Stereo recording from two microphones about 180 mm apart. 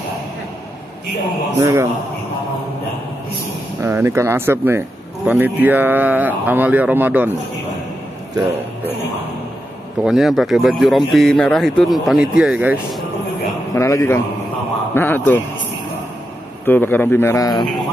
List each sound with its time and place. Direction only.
1.6 s speech: 15° right (ahead or behind)
3.8 s speech: 15° right (ahead or behind)
10.0 s speech: centre (ahead or behind)
13.7 s a man's voice: 15° left (ahead or behind)
16.6 s a man's voice: 10° left (ahead or behind)